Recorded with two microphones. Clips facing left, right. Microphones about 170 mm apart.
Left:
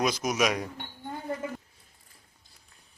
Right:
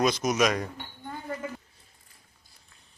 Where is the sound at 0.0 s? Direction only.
10° left (ahead or behind).